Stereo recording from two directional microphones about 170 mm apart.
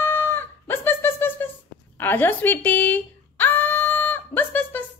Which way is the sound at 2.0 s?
10° left (ahead or behind).